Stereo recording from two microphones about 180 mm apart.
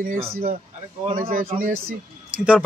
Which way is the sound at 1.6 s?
55° right (ahead or behind).